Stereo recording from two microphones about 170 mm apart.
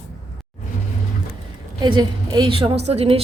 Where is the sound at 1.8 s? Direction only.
25° right (ahead or behind).